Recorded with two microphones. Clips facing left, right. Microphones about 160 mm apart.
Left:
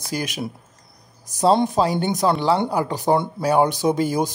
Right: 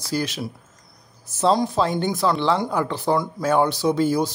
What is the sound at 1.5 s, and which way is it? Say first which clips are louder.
Speech: left 2 dB; 20° left (ahead or behind).